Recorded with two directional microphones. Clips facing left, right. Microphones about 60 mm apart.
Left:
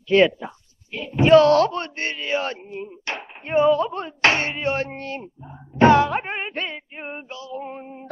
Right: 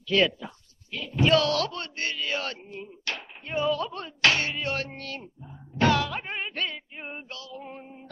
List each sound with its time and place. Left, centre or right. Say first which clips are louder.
0.1 s speech: left 7 dB; left